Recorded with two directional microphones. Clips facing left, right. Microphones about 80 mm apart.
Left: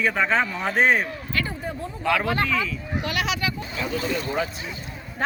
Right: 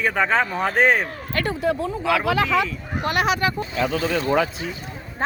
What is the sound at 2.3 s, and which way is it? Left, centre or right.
Speech, right.